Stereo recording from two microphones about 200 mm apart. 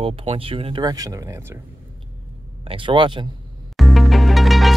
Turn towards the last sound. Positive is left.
turn(degrees=0)  # may be behind; listen again after turning